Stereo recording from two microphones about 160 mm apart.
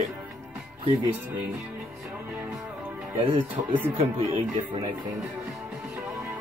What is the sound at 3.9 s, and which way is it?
Speech, 40° right (ahead or behind).